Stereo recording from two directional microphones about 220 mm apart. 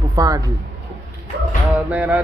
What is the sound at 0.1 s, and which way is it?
Speech, 15° right (ahead or behind).